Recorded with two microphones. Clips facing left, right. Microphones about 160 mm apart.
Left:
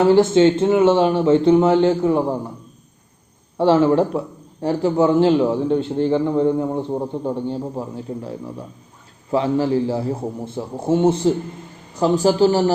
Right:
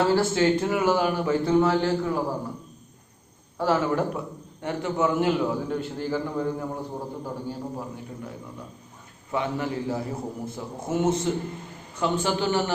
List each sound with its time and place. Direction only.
0.0 s a man's voice: 20° left (ahead or behind)
3.6 s a man's voice: 25° left (ahead or behind)
9.3 s a man's voice: 30° left (ahead or behind)